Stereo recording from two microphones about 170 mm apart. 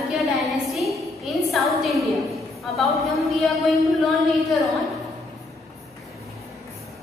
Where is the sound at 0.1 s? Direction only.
Centre (ahead or behind).